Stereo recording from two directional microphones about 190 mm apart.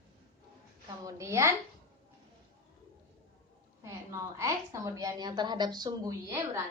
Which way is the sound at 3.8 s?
15° right (ahead or behind).